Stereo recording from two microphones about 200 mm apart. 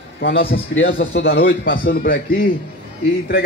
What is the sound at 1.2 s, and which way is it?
A man's voice, 50° left (ahead or behind).